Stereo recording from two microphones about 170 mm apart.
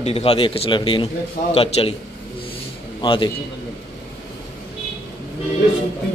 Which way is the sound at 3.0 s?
30° left (ahead or behind).